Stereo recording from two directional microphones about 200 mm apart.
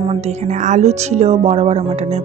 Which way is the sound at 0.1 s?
35° right (ahead or behind).